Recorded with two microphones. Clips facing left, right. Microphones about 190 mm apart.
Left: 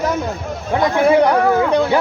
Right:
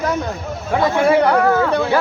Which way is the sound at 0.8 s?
15° left (ahead or behind).